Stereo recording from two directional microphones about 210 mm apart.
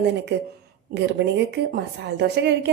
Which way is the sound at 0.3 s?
55° right (ahead or behind).